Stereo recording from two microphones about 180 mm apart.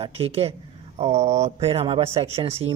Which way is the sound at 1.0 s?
40° right (ahead or behind).